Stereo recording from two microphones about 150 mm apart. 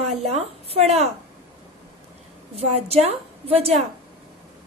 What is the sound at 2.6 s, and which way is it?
A woman's voice, 45° right (ahead or behind).